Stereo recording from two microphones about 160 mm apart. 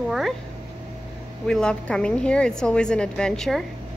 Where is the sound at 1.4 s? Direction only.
5° left (ahead or behind).